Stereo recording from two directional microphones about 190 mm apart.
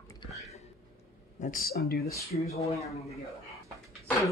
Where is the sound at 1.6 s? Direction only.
55° left (ahead or behind).